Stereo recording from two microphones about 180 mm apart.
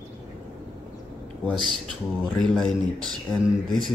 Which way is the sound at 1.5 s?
25° right (ahead or behind).